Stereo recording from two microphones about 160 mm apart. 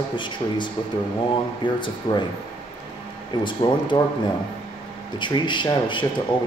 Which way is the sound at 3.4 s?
30° left (ahead or behind).